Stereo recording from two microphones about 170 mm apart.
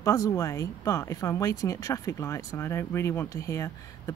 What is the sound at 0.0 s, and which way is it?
Speech, 20° left (ahead or behind).